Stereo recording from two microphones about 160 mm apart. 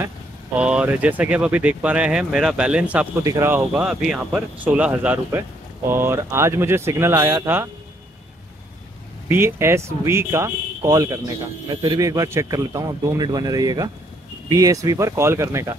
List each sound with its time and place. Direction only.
0.6 s speech: 5° right (ahead or behind)
3.7 s speech: 5° right (ahead or behind)
9.3 s a man's voice: 15° right (ahead or behind)